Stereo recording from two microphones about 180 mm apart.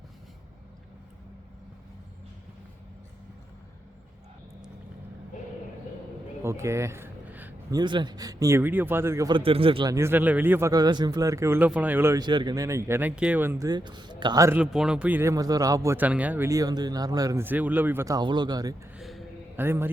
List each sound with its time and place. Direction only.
6.4 s a sound: 15° right (ahead or behind)
7.8 s a man's voice: 25° right (ahead or behind)
9.4 s a man's voice: 30° right (ahead or behind)
9.9 s speech: 15° right (ahead or behind)
14.6 s speech: 5° right (ahead or behind); by 18.7 s 20° right (ahead or behind)
18.9 s a sound: centre (ahead or behind)
19.5 s speech: 10° right (ahead or behind)